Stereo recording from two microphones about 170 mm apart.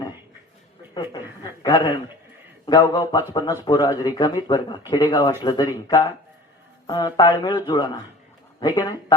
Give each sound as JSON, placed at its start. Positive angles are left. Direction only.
{"t": 0.9, "sound": "speech", "side_deg": 25}